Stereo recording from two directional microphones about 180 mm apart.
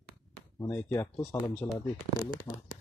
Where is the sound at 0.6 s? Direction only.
15° left (ahead or behind).